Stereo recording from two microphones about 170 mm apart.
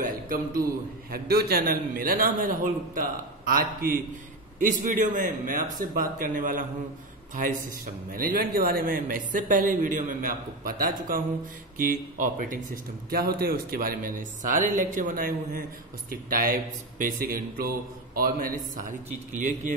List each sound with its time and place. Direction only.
0.0 s a sound: 55° right (ahead or behind)
1.1 s a man's voice: 65° right (ahead or behind); by 12.6 s 50° right (ahead or behind)
13.1 s a man's voice: 60° right (ahead or behind)